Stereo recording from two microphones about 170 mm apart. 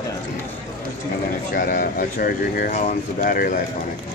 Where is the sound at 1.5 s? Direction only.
60° left (ahead or behind).